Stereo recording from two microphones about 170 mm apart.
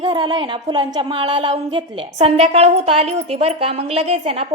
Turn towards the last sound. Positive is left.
turn(degrees=-35)  # may be behind; listen again after turning